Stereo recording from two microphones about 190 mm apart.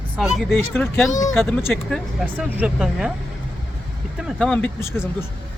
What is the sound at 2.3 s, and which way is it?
Speech, 5° right (ahead or behind).